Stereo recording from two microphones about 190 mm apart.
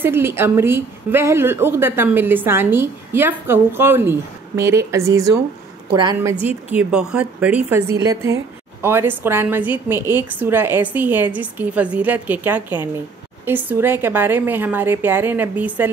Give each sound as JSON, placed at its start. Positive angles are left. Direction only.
{"t": 0.0, "sound": "a woman's voice", "side_deg": -10}
{"t": 6.4, "sound": "a woman's voice", "side_deg": -5}